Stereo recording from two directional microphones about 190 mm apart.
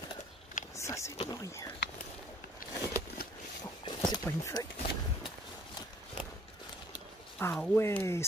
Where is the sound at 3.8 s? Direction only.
20° left (ahead or behind).